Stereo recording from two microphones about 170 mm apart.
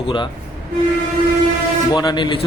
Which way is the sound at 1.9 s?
25° left (ahead or behind).